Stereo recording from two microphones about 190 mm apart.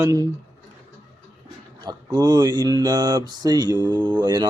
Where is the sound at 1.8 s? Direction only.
20° right (ahead or behind).